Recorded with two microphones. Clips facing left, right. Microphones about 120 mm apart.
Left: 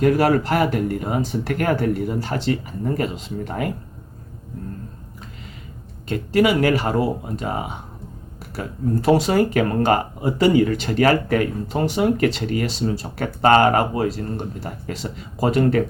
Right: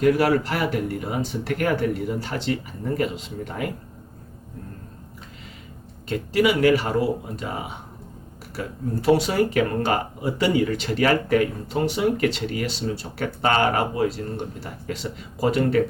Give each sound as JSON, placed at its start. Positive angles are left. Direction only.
{"t": 0.0, "sound": "speech", "side_deg": 45}
{"t": 6.1, "sound": "speech", "side_deg": 45}